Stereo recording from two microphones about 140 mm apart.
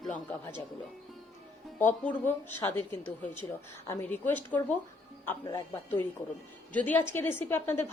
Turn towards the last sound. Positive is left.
turn(degrees=15)  # may be behind; listen again after turning